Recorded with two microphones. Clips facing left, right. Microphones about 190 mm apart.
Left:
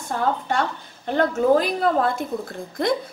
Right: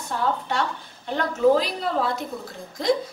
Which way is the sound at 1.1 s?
50° left (ahead or behind).